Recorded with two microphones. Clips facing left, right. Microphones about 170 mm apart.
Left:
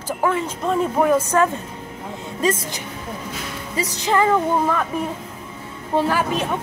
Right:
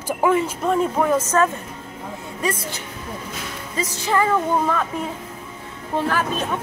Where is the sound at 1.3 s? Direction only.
15° left (ahead or behind).